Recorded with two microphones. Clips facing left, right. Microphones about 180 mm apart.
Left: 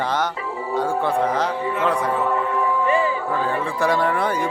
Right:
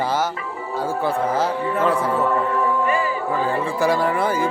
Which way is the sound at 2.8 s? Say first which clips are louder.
Left 2 dB; 25° left (ahead or behind).